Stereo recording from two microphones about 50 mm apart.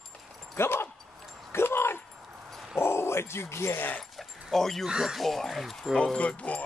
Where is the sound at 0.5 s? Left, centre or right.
Left.